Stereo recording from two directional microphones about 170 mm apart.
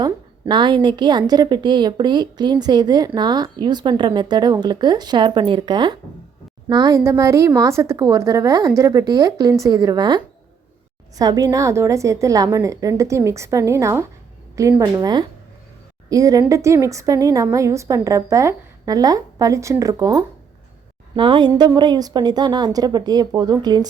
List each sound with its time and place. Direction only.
0.0 s a woman's voice: 25° right (ahead or behind)